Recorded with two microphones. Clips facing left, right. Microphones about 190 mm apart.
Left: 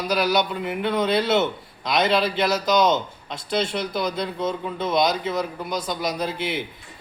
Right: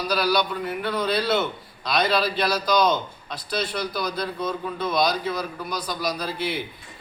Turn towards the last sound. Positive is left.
turn(degrees=20)  # may be behind; listen again after turning